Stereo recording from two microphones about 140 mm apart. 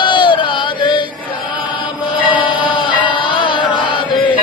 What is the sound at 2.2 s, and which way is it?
Chant, 35° left (ahead or behind).